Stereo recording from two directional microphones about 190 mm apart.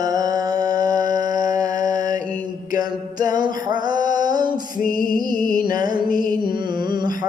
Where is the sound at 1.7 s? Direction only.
45° left (ahead or behind).